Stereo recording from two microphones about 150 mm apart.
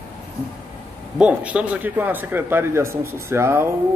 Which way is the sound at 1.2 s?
10° right (ahead or behind).